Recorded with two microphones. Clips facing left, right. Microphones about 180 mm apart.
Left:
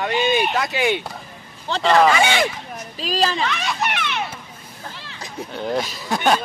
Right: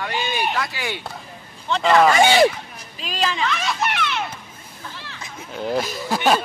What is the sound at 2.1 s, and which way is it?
Speech, 35° right (ahead or behind).